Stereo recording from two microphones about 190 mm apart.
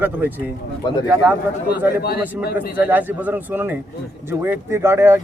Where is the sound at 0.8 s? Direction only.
20° left (ahead or behind).